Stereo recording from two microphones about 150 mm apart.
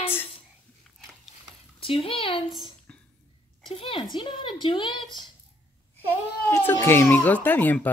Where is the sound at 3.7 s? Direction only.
35° left (ahead or behind).